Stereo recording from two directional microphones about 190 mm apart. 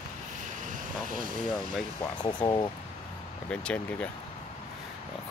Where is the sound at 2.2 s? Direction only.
20° left (ahead or behind).